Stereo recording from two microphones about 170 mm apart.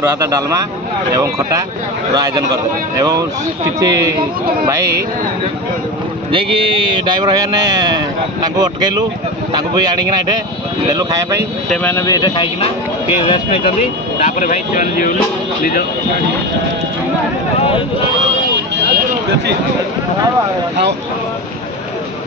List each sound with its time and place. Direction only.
2.1 s speech: 25° right (ahead or behind)
6.3 s speech: 30° right (ahead or behind)
10.9 s speech: 20° right (ahead or behind)
11.7 s speech: 10° left (ahead or behind)
12.1 s speech: 25° left (ahead or behind); by 15.1 s 50° left (ahead or behind)